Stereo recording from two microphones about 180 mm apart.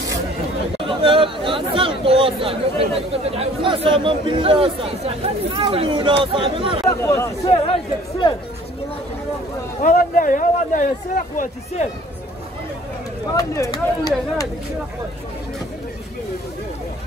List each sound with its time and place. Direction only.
0.8 s speech: 30° right (ahead or behind)
6.9 s speech: 15° left (ahead or behind)
7.4 s speech: 30° left (ahead or behind)
9.8 s speech: 50° left (ahead or behind)
13.3 s speech: 20° left (ahead or behind)